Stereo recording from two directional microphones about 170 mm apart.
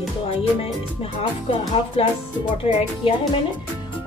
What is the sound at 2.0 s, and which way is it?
A woman's voice, 35° left (ahead or behind).